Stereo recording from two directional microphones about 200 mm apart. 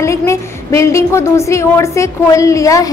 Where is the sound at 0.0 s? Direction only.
15° left (ahead or behind).